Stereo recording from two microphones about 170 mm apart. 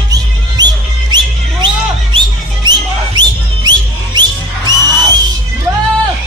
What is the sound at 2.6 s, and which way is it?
Music, 25° right (ahead or behind).